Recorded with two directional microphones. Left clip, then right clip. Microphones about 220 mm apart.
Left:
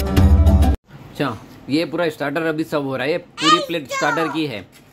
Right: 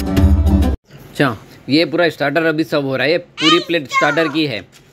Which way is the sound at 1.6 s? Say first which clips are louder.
Right 6 dB; 10° right (ahead or behind).